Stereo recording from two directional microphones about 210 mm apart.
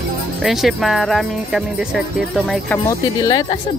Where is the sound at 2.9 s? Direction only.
20° left (ahead or behind).